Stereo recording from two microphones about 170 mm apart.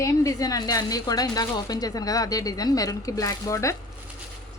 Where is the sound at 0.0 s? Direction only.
20° left (ahead or behind).